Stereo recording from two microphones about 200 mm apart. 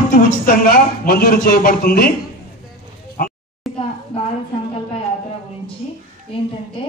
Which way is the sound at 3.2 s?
40° left (ahead or behind).